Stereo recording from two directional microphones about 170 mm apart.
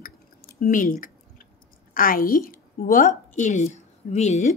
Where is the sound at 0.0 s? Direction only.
60° left (ahead or behind).